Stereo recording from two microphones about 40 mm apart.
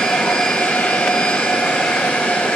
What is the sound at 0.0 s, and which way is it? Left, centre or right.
Jet engine, left.